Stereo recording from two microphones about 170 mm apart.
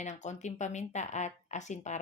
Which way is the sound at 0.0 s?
45° left (ahead or behind).